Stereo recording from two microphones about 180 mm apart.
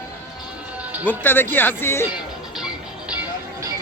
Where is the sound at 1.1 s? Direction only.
10° left (ahead or behind).